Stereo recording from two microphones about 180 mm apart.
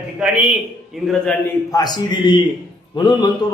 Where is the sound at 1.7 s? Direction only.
25° left (ahead or behind).